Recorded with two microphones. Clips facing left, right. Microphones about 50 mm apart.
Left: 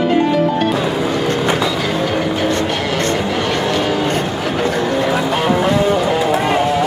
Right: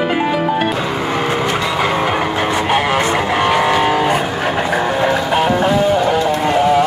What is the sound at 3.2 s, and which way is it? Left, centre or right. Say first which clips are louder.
Vehicle: right 3 dB; right.